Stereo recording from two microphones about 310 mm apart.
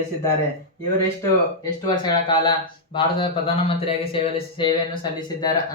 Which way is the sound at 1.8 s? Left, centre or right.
Centre.